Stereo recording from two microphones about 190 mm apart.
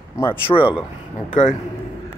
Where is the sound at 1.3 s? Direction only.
40° left (ahead or behind).